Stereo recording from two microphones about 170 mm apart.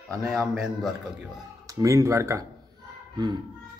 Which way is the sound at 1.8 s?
20° right (ahead or behind).